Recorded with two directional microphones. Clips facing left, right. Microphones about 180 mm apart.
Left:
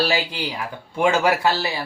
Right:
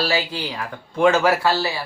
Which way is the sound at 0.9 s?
15° left (ahead or behind).